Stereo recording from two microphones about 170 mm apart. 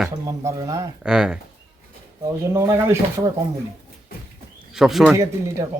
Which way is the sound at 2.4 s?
15° right (ahead or behind).